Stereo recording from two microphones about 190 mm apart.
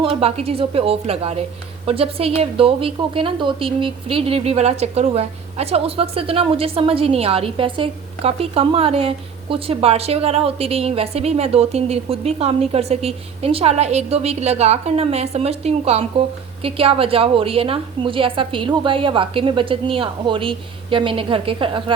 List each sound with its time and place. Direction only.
0.0 s a woman's voice: 30° right (ahead or behind)